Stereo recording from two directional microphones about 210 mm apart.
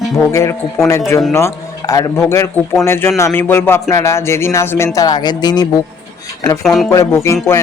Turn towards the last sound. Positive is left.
turn(degrees=15)  # may be behind; listen again after turning